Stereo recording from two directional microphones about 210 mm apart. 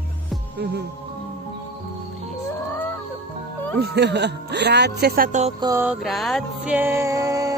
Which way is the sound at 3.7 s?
50° right (ahead or behind).